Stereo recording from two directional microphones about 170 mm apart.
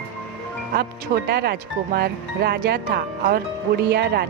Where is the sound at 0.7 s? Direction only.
65° right (ahead or behind).